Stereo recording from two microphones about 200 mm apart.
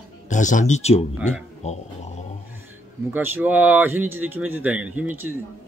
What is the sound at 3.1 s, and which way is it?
Speech, 10° right (ahead or behind).